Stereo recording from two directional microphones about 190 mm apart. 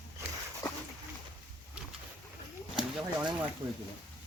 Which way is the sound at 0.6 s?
15° left (ahead or behind).